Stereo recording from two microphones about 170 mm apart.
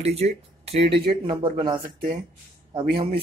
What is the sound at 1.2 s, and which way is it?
Speech, 30° right (ahead or behind).